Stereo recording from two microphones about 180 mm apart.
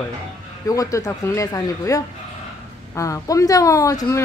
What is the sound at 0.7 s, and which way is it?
Speech, 20° left (ahead or behind).